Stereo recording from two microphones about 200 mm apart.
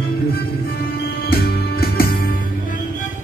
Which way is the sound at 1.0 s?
50° left (ahead or behind).